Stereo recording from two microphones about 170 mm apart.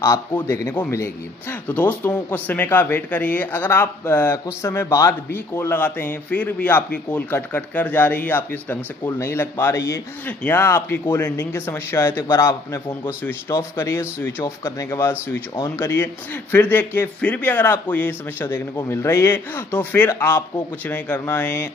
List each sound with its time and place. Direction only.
0.0 s speech: 15° left (ahead or behind)